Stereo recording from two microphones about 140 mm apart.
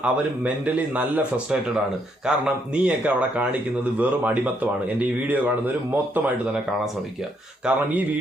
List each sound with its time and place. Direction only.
0.0 s speech: 10° right (ahead or behind)